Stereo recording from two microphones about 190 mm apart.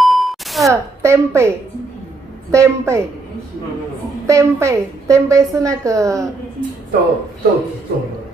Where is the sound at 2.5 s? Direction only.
15° right (ahead or behind).